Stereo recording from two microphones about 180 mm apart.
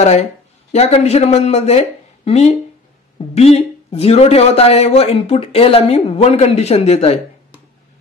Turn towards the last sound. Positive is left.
turn(degrees=35)  # may be behind; listen again after turning